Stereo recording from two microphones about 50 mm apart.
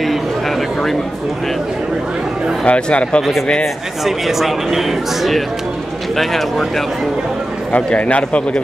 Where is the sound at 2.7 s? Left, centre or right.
Left.